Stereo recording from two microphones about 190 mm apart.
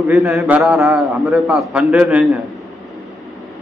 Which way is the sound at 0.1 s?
5° right (ahead or behind).